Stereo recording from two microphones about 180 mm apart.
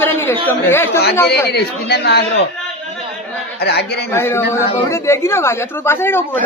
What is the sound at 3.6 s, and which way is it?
Speech, 65° left (ahead or behind).